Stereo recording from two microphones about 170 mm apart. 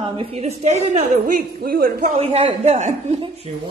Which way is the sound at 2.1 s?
35° right (ahead or behind).